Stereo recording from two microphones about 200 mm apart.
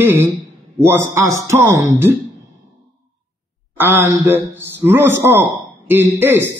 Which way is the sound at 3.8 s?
10° right (ahead or behind).